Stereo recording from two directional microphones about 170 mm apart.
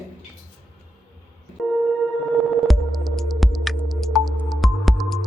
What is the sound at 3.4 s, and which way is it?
Music, centre (ahead or behind).